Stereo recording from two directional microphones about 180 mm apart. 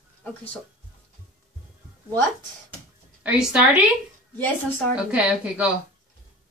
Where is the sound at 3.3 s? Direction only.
5° right (ahead or behind).